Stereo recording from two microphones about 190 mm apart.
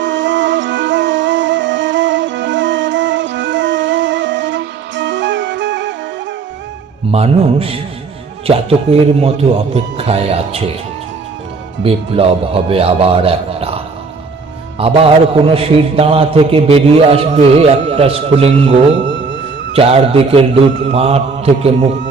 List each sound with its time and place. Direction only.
0.0 s music: 75° right (ahead or behind)
7.1 s a man's voice: 30° right (ahead or behind)
11.8 s a man's voice: 30° right (ahead or behind)
19.0 s music: 70° right (ahead or behind)
19.7 s a man's voice: 30° right (ahead or behind)